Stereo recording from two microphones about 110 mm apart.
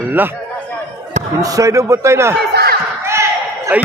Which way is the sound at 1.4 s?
30° right (ahead or behind).